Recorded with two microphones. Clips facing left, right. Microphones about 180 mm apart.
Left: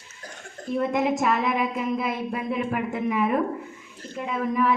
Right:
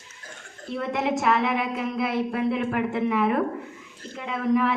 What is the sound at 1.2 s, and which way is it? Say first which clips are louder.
A woman's voice: even; 75° right (ahead or behind).